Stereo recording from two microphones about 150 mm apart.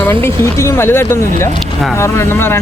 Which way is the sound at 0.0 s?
15° left (ahead or behind).